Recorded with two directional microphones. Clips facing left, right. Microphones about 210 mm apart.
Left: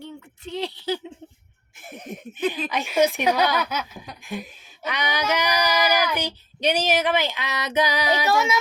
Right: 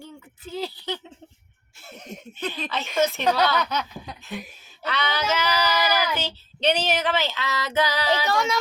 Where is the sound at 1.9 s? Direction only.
15° left (ahead or behind).